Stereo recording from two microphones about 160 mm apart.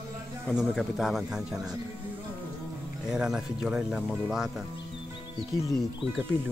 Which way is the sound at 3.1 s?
5° right (ahead or behind).